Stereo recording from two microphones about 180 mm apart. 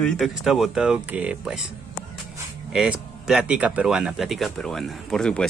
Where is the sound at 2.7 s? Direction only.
Centre (ahead or behind).